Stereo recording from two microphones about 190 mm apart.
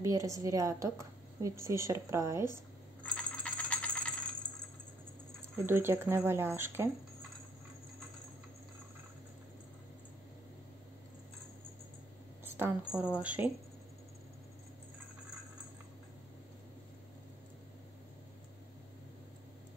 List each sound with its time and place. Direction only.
0.0 s a woman's voice: 15° right (ahead or behind)
3.0 s a sound: 5° left (ahead or behind)
5.7 s a woman's voice: 10° right (ahead or behind)
12.5 s a woman's voice: 10° right (ahead or behind)